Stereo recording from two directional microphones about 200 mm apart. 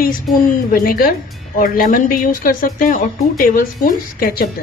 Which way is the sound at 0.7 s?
45° left (ahead or behind).